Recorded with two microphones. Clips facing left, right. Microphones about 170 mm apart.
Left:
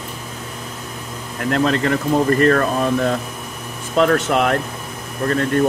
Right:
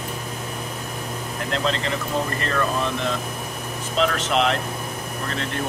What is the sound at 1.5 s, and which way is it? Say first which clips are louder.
Speech: left 8 dB; 50° left (ahead or behind).